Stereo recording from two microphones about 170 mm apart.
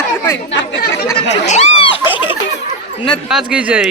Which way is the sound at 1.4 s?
40° left (ahead or behind).